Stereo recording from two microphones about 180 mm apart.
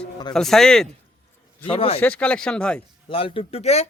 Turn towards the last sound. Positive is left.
turn(degrees=35)  # may be behind; listen again after turning